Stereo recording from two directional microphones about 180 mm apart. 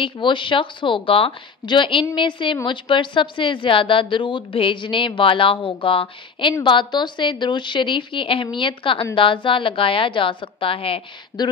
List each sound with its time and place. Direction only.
0.0 s a woman's voice: 25° left (ahead or behind)